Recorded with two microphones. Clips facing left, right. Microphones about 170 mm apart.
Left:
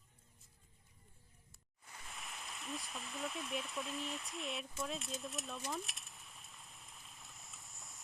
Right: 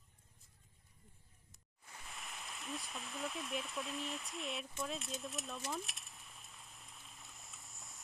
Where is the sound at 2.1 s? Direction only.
Centre (ahead or behind).